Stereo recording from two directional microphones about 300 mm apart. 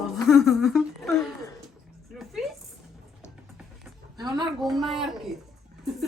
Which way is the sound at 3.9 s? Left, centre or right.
Centre.